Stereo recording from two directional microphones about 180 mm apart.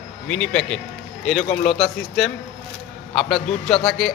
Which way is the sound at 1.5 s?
40° left (ahead or behind).